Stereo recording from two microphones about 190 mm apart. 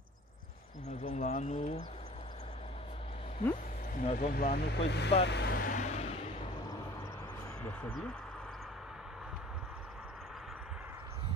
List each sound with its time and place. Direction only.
1.0 s speech: 35° left (ahead or behind)
4.0 s speech: 45° left (ahead or behind); by 5.1 s 65° left (ahead or behind)
5.2 s vehicle: 60° left (ahead or behind); by 6.1 s 35° left (ahead or behind)
7.6 s speech: 5° left (ahead or behind)